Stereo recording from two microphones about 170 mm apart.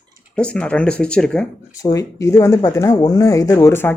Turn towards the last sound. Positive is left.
turn(degrees=15)  # may be behind; listen again after turning